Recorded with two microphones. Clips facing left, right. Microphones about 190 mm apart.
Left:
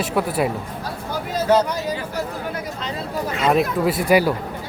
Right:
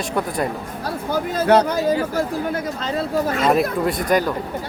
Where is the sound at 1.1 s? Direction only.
60° right (ahead or behind).